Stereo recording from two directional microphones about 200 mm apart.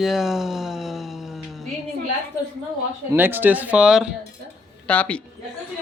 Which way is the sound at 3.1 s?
10° right (ahead or behind).